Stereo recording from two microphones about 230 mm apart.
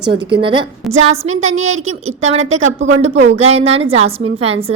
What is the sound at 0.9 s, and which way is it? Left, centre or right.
A woman's voice, right.